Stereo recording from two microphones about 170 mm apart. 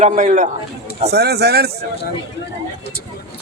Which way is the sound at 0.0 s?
45° right (ahead or behind).